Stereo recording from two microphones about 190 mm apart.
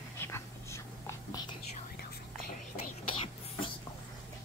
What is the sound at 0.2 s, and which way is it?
Whispering, 15° left (ahead or behind).